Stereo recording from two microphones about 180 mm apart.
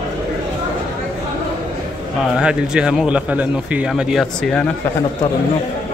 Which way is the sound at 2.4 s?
5° right (ahead or behind).